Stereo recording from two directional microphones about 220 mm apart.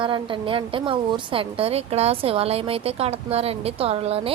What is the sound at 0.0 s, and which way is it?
A woman's voice, 25° right (ahead or behind).